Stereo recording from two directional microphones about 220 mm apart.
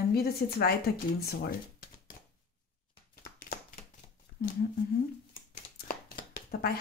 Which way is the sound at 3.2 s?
40° left (ahead or behind).